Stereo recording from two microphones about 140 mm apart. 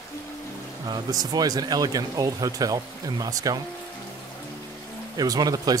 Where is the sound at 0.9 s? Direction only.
25° right (ahead or behind).